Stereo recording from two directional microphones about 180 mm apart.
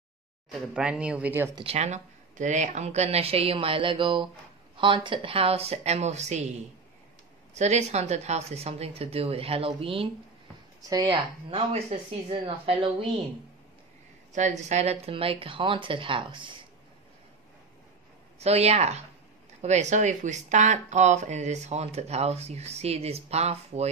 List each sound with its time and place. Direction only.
0.5 s speech: 5° right (ahead or behind)
1.5 s speech: 30° right (ahead or behind)
7.5 s speech: 40° right (ahead or behind)
14.3 s speech: 40° right (ahead or behind)
18.4 s speech: 35° right (ahead or behind)